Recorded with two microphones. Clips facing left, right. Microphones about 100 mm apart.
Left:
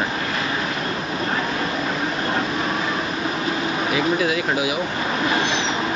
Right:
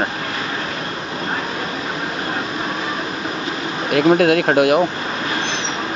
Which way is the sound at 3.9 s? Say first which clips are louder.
Right 10 dB; 60° right (ahead or behind).